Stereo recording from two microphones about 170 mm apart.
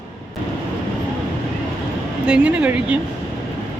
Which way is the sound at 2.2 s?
5° right (ahead or behind).